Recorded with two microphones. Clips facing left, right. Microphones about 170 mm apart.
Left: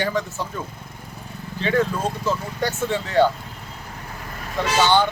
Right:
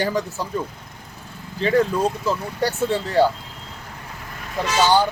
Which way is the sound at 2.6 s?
35° right (ahead or behind).